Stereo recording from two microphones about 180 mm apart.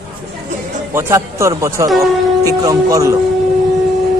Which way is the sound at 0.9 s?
15° right (ahead or behind).